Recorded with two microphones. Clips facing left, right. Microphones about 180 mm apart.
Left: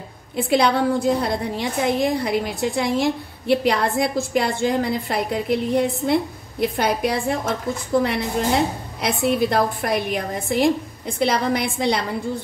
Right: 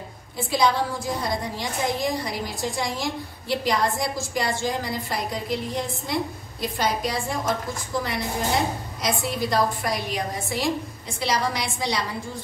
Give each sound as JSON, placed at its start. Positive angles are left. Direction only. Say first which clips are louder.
{"t": 0.4, "sound": "a woman's voice", "louder": "left 4 dB", "side_deg": 60}